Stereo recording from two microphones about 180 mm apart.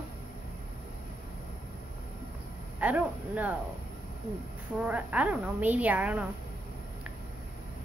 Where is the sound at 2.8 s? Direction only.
10° right (ahead or behind).